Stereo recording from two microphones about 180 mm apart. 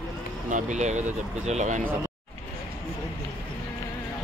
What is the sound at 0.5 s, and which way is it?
Speech, 45° right (ahead or behind).